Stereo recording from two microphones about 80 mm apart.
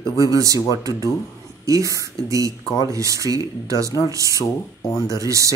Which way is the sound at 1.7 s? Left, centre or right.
Right.